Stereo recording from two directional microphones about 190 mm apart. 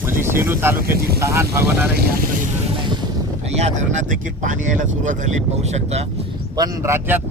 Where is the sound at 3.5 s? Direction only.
35° right (ahead or behind).